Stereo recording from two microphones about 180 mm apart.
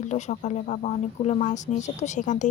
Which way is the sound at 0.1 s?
40° left (ahead or behind).